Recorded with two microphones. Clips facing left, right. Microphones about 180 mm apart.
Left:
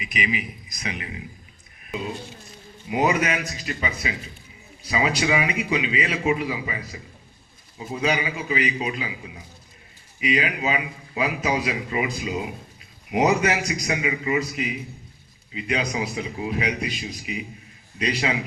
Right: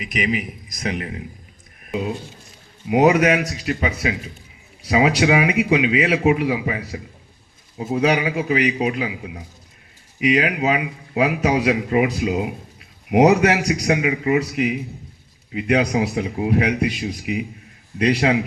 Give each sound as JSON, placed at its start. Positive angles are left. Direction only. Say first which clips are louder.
{"t": 0.0, "sound": "a man's voice", "louder": "right 5 dB", "side_deg": -50}
{"t": 1.9, "sound": "a sound", "louder": "right 6 dB", "side_deg": -55}
{"t": 2.9, "sound": "speech", "louder": "right 7 dB", "side_deg": -65}